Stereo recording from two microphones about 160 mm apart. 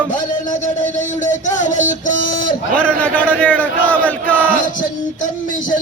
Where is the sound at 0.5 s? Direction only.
50° left (ahead or behind).